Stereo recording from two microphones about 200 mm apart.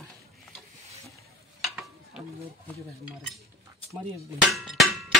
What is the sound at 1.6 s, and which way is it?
Stir, centre (ahead or behind).